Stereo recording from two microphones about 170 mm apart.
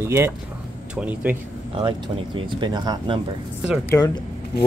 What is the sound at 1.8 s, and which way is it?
Speech, 30° right (ahead or behind).